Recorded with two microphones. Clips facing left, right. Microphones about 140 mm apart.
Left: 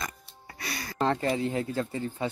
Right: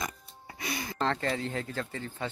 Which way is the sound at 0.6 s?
20° right (ahead or behind).